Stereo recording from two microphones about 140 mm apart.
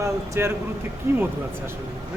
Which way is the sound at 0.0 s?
20° right (ahead or behind).